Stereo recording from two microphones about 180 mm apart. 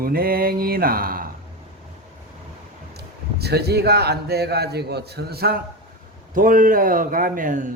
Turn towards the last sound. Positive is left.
turn(degrees=-45)  # may be behind; listen again after turning